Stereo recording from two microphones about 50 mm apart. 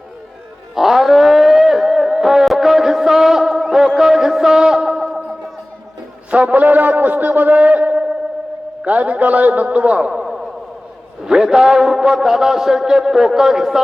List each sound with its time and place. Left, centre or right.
0.8 s a sound: centre
6.3 s a man's voice: right
11.2 s a man's voice: centre